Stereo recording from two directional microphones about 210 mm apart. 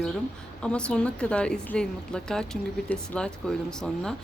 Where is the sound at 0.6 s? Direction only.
5° left (ahead or behind).